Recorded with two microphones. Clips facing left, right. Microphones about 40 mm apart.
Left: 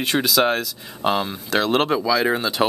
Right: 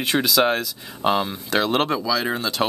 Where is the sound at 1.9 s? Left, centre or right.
Centre.